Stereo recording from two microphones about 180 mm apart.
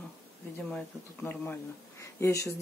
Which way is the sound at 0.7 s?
10° left (ahead or behind).